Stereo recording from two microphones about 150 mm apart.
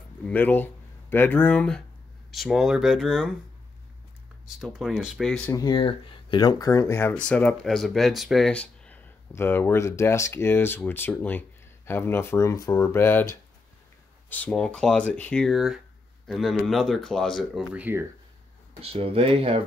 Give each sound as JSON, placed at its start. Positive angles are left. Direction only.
{"t": 0.3, "sound": "speech", "side_deg": 10}
{"t": 4.6, "sound": "speech", "side_deg": 0}
{"t": 5.5, "sound": "speech", "side_deg": 25}
{"t": 14.3, "sound": "speech", "side_deg": 10}
{"t": 17.7, "sound": "speech", "side_deg": -10}
{"t": 18.8, "sound": "speech", "side_deg": -40}